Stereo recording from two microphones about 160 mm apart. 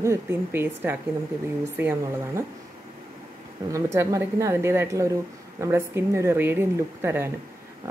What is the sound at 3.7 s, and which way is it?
Speech, 20° right (ahead or behind).